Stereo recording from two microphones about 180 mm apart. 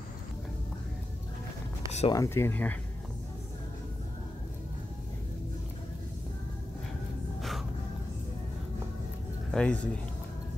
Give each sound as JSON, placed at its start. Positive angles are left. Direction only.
{"t": 1.9, "sound": "a sound", "side_deg": 35}
{"t": 2.1, "sound": "speech", "side_deg": 15}
{"t": 9.5, "sound": "speech", "side_deg": 5}